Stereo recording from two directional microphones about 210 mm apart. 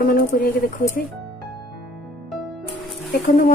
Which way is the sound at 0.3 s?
45° left (ahead or behind).